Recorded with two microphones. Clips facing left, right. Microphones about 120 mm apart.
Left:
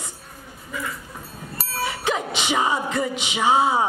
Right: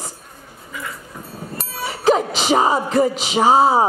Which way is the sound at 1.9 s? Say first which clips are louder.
Right 11 dB; 35° right (ahead or behind).